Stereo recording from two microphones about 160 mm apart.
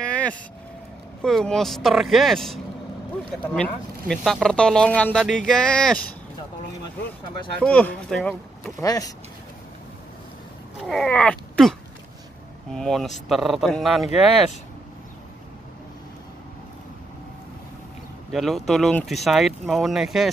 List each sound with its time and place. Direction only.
0.0 s vehicle: 10° left (ahead or behind)
1.2 s speech: 5° left (ahead or behind)
7.6 s speech: 10° left (ahead or behind)
8.8 s speech: 25° left (ahead or behind)
10.8 s a sound: centre (ahead or behind)
12.7 s speech: centre (ahead or behind)
18.3 s speech: centre (ahead or behind)